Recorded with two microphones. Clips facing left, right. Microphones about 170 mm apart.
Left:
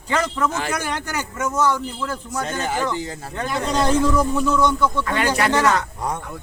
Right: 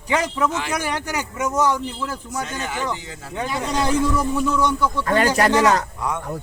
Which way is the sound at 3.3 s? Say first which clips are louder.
Left 1 dB; 10° right (ahead or behind).